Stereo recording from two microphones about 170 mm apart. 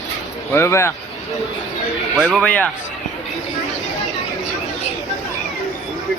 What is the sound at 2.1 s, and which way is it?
Speech, 5° left (ahead or behind).